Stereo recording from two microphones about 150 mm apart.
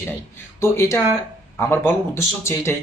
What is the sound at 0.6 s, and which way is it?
Speech, 15° left (ahead or behind).